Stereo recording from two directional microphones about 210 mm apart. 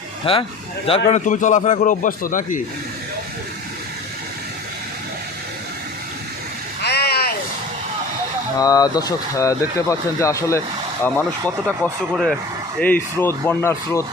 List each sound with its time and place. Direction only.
0.3 s a man's voice: 25° left (ahead or behind)
6.8 s a sound: 50° left (ahead or behind)
8.5 s speech: 15° left (ahead or behind)